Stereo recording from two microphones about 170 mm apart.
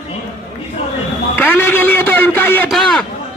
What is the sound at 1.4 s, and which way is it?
A man's voice, 10° left (ahead or behind).